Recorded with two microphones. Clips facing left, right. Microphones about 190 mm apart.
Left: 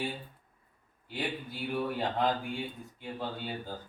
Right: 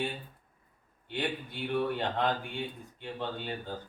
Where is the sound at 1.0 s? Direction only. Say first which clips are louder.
Right 2 dB; 5° left (ahead or behind).